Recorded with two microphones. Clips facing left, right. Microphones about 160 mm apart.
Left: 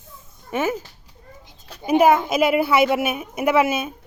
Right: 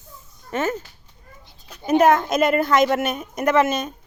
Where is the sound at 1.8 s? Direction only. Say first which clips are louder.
Even; 10° left (ahead or behind).